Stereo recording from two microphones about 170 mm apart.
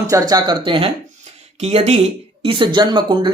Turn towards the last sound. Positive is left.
turn(degrees=-30)  # may be behind; listen again after turning